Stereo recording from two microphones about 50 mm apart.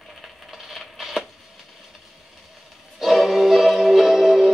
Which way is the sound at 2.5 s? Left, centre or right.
Centre.